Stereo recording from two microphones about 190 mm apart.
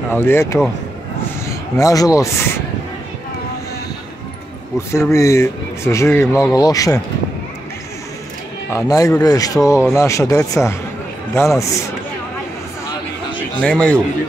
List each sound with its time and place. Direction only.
0.1 s speech: 10° left (ahead or behind)
4.7 s speech: 15° left (ahead or behind)
8.7 s speech: 20° left (ahead or behind)
13.6 s a man's voice: 5° left (ahead or behind)